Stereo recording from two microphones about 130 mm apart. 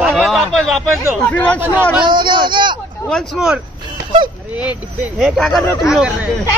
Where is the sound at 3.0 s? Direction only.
Centre (ahead or behind).